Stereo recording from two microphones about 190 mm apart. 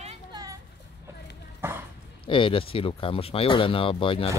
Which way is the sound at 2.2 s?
25° left (ahead or behind).